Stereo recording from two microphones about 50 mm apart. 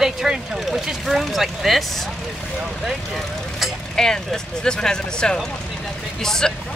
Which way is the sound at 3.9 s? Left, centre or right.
Centre.